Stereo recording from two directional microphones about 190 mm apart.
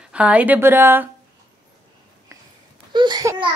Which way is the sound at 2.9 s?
20° right (ahead or behind).